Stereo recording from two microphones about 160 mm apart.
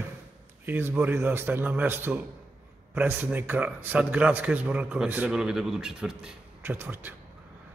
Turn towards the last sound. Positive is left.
turn(degrees=-15)  # may be behind; listen again after turning